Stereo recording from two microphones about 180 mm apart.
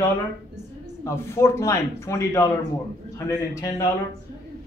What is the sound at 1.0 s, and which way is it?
A man's voice, 15° left (ahead or behind).